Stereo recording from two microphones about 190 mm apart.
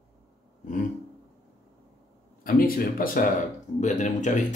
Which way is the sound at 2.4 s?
50° left (ahead or behind).